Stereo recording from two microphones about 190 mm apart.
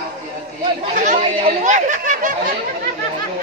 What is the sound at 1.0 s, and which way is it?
Speech, 40° right (ahead or behind).